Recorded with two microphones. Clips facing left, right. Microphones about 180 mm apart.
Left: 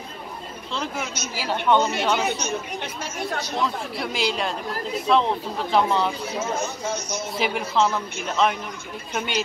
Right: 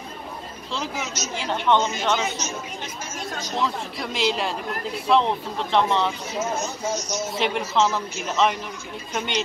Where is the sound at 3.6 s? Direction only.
Centre (ahead or behind).